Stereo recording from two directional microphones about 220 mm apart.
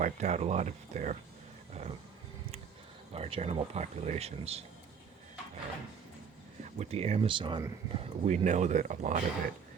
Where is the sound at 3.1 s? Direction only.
30° right (ahead or behind).